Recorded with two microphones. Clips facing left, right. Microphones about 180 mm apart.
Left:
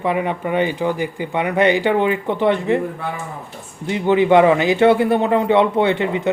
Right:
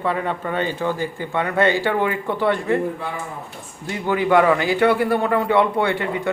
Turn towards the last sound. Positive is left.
turn(degrees=20)  # may be behind; listen again after turning